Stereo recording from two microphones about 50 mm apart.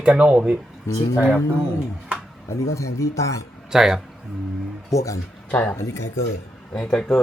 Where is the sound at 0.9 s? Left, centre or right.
Left.